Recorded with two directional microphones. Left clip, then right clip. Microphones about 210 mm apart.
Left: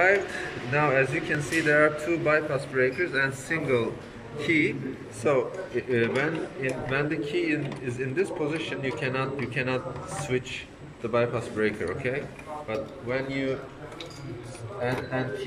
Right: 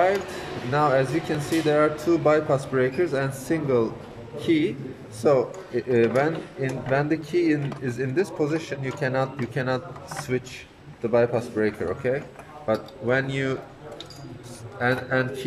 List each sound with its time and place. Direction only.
0.7 s a man's voice: 25° right (ahead or behind)
12.6 s speech: 45° right (ahead or behind)
14.8 s speech: 50° right (ahead or behind)